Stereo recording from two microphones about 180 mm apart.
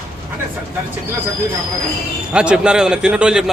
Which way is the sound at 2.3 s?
5° right (ahead or behind).